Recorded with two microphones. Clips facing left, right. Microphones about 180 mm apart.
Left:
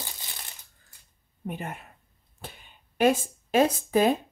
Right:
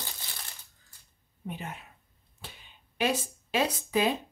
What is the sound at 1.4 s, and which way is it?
Speech, 50° left (ahead or behind).